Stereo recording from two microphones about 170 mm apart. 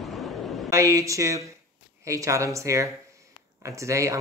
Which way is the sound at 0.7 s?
20° right (ahead or behind).